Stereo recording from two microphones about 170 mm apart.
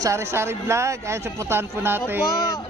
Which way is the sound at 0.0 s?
15° right (ahead or behind).